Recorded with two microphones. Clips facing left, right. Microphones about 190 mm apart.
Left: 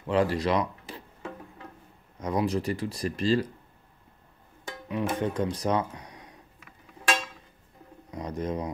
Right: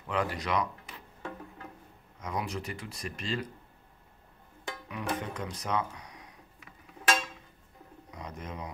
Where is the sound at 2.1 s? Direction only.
35° left (ahead or behind).